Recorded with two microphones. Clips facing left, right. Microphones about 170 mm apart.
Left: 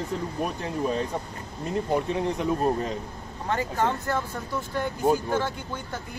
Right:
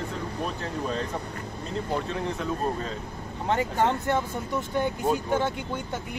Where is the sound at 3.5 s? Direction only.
25° right (ahead or behind).